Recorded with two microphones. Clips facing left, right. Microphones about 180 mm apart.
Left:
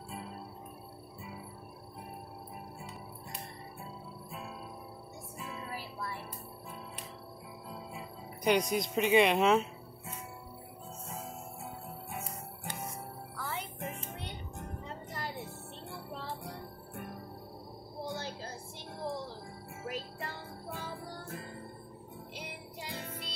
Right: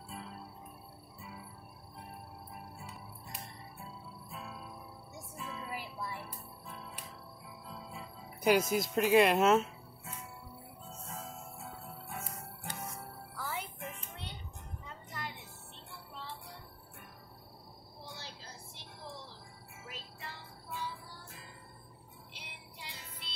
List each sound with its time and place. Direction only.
5.7 s music: 15° right (ahead or behind)
8.5 s speech: 5° right (ahead or behind)
13.4 s music: 5° right (ahead or behind)
13.7 s music: 40° left (ahead or behind)
18.0 s a sound: 50° left (ahead or behind)
19.8 s music: 50° left (ahead or behind)